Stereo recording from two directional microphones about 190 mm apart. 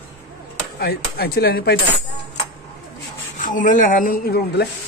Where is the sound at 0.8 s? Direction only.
55° left (ahead or behind).